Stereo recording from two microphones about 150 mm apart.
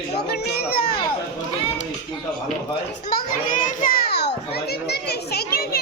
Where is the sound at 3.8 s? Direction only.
80° left.